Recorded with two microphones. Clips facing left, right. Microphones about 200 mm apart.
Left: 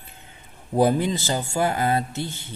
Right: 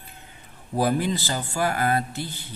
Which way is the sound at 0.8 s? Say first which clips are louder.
Left 3 dB; 25° left (ahead or behind).